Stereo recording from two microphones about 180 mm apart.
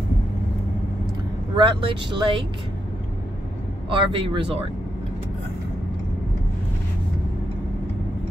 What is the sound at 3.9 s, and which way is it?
Speech, 30° right (ahead or behind).